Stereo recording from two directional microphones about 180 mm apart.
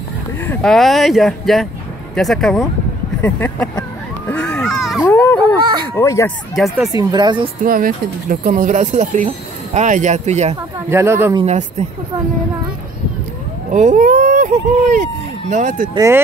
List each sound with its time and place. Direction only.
0.5 s speech: 5° left (ahead or behind)
4.3 s a sound: 5° left (ahead or behind)
5.0 s a sound: 10° left (ahead or behind)
5.9 s speech: 15° left (ahead or behind)
6.5 s speech: centre (ahead or behind)
6.9 s speech: 20° right (ahead or behind)
7.6 s speech: 50° right (ahead or behind)
10.9 s speech: 15° right (ahead or behind)
13.7 s speech: 45° right (ahead or behind)
15.9 s speech: 15° right (ahead or behind)